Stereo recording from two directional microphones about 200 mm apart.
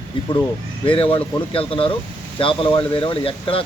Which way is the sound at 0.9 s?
25° left (ahead or behind).